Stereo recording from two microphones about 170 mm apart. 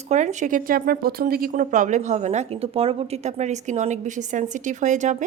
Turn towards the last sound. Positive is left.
turn(degrees=-45)  # may be behind; listen again after turning